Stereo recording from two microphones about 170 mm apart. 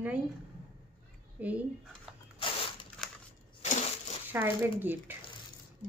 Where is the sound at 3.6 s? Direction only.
40° left (ahead or behind).